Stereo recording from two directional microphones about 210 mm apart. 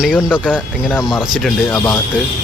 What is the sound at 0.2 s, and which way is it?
Speech, 10° left (ahead or behind).